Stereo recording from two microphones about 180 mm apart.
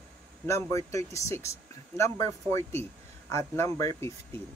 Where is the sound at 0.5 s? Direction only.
15° left (ahead or behind).